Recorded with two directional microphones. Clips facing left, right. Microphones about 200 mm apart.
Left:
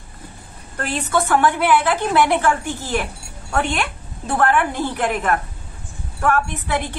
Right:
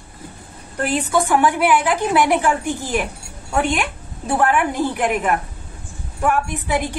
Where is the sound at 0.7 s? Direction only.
10° right (ahead or behind).